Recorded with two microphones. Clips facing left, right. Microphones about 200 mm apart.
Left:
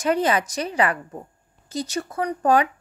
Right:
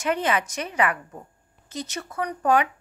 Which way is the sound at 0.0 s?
35° left (ahead or behind).